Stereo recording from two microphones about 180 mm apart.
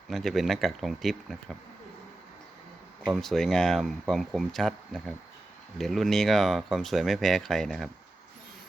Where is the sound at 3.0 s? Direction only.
Centre (ahead or behind).